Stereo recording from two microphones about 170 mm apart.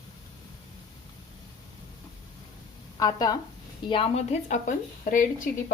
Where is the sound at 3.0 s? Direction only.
20° left (ahead or behind).